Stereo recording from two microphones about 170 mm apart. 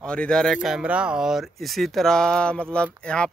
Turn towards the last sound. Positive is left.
turn(degrees=5)  # may be behind; listen again after turning